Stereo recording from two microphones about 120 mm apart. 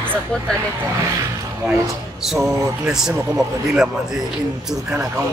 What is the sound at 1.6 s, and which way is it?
Speech, 5° right (ahead or behind).